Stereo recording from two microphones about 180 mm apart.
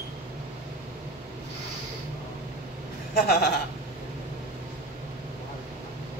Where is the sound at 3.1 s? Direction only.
55° left (ahead or behind).